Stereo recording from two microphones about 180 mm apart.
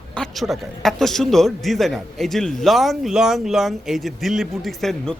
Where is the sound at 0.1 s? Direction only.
Centre (ahead or behind).